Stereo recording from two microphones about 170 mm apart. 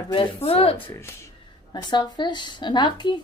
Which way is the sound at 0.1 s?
35° left (ahead or behind).